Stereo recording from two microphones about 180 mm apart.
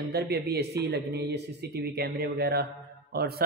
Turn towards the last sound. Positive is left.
turn(degrees=-60)  # may be behind; listen again after turning